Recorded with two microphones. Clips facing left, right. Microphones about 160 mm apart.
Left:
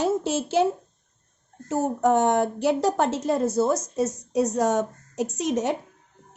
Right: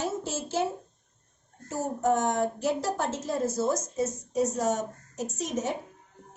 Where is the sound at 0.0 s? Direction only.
70° left (ahead or behind).